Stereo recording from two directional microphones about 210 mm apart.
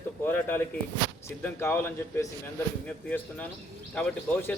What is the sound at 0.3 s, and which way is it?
A man's voice, 10° left (ahead or behind).